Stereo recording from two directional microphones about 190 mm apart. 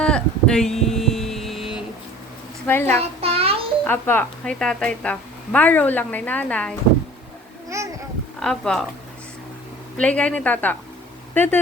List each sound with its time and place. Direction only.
0.0 s music: 5° left (ahead or behind)
2.6 s a child's voice: 10° left (ahead or behind)
3.2 s child singing: 30° right (ahead or behind)
3.8 s a woman's voice: 10° left (ahead or behind)
7.7 s a sound: 15° right (ahead or behind)
8.4 s speech: 5° left (ahead or behind)
10.0 s a woman's voice: 5° left (ahead or behind)